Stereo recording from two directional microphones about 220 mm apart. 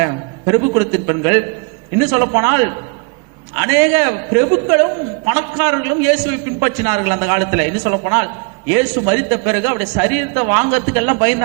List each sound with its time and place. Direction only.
0.0 s a man's voice: 15° right (ahead or behind)